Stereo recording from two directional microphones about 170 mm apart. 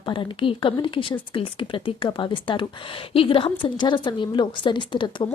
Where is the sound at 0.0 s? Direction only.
30° left (ahead or behind).